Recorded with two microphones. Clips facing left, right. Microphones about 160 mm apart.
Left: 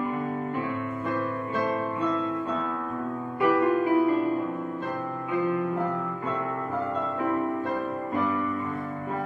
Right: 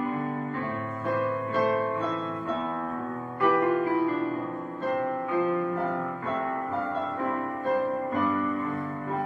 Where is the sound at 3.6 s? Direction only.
15° left (ahead or behind).